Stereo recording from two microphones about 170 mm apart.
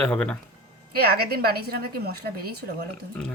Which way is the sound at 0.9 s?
65° right (ahead or behind).